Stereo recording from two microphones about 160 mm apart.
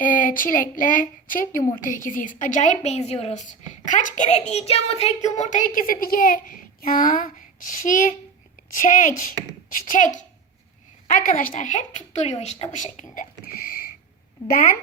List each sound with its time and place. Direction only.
0.0 s child singing: 55° left (ahead or behind)
1.8 s a woman's voice: 55° left (ahead or behind)